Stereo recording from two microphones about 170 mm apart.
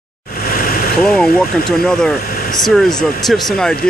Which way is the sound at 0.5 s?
60° left (ahead or behind).